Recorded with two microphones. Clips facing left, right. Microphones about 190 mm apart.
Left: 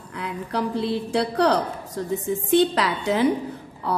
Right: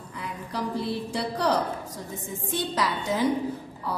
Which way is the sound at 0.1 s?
65° left (ahead or behind).